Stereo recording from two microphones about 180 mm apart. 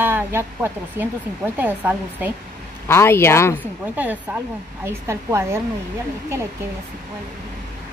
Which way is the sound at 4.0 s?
10° right (ahead or behind).